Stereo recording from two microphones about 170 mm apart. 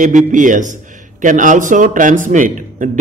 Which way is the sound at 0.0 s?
50° right (ahead or behind).